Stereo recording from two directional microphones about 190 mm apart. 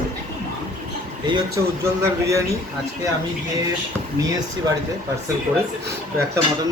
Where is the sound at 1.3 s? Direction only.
20° right (ahead or behind).